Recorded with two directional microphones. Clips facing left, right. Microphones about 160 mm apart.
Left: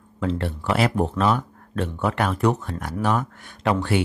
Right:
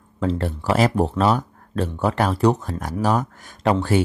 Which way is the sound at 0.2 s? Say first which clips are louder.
Right 2 dB; 40° right (ahead or behind).